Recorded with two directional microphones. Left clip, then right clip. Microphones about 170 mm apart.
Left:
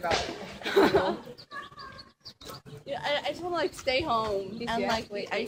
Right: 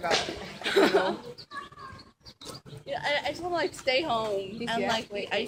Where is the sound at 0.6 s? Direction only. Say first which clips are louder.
Even; 30° left (ahead or behind).